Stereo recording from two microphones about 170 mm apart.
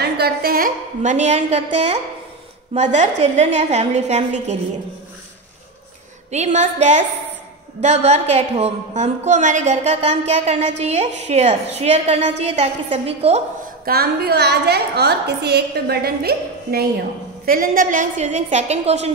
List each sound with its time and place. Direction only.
0.0 s a woman's voice: 70° right (ahead or behind); by 4.6 s 40° right (ahead or behind)
6.3 s a woman's voice: 40° right (ahead or behind)
13.8 s a woman's voice: 65° right (ahead or behind)
17.5 s a woman's voice: 55° right (ahead or behind)